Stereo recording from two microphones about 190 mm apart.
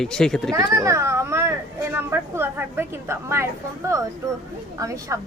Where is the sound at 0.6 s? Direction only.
15° right (ahead or behind).